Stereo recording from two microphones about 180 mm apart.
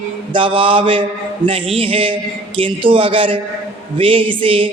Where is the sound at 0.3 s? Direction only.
30° right (ahead or behind).